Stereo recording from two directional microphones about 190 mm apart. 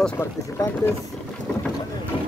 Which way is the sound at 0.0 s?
15° left (ahead or behind).